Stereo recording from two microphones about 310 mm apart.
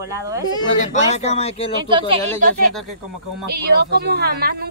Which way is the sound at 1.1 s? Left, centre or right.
Left.